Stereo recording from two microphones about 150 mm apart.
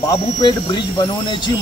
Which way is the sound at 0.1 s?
30° left (ahead or behind).